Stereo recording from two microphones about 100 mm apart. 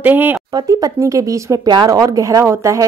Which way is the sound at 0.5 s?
35° right (ahead or behind).